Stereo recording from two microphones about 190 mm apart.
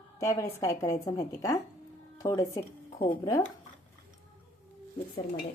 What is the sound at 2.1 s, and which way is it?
Speech, 20° left (ahead or behind).